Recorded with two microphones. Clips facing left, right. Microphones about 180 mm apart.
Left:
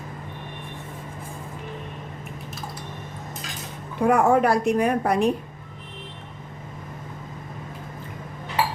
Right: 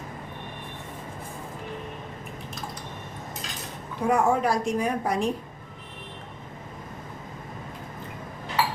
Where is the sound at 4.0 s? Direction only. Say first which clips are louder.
Left 4 dB; 60° left (ahead or behind).